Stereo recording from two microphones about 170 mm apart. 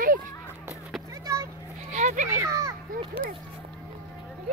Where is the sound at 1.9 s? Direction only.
45° right (ahead or behind).